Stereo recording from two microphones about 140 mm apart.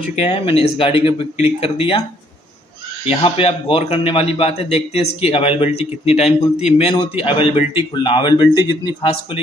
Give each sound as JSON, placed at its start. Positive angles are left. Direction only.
{"t": 0.3, "sound": "a man's voice", "side_deg": 40}
{"t": 3.1, "sound": "a man's voice", "side_deg": 40}